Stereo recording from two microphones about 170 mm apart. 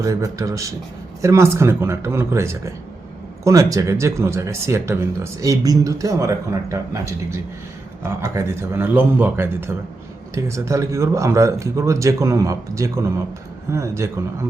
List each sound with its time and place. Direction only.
0.0 s a man's voice: 20° right (ahead or behind)
8.0 s speech: 15° right (ahead or behind)